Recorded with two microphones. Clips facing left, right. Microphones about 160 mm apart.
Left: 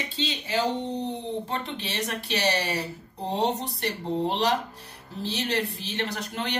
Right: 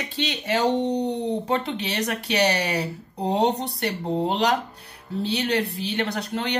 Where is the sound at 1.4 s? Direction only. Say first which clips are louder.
Right 7 dB; 75° right (ahead or behind).